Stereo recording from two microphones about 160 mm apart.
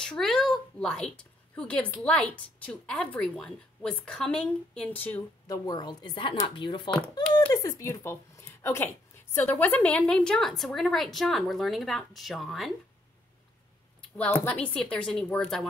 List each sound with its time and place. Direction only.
0.0 s a woman's voice: 5° left (ahead or behind)
5.5 s speech: 25° left (ahead or behind); by 12.7 s centre (ahead or behind)
14.1 s a woman's voice: 10° left (ahead or behind)